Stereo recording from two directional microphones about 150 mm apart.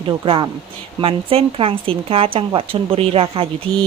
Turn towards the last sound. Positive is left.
turn(degrees=-35)  # may be behind; listen again after turning